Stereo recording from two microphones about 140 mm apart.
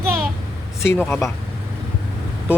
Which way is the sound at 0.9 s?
15° left (ahead or behind).